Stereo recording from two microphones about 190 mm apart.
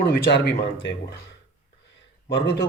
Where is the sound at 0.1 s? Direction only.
60° left (ahead or behind).